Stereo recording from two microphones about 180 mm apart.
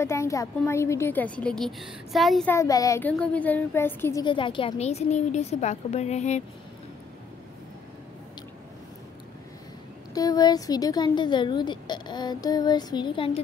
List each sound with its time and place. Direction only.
0.0 s a woman's voice: 15° left (ahead or behind)
2.5 s a woman's voice: 20° left (ahead or behind)
4.2 s a woman's voice: 25° left (ahead or behind)
10.1 s speech: 20° left (ahead or behind)